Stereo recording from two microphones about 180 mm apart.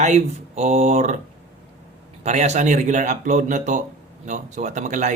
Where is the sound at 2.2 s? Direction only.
40° right (ahead or behind).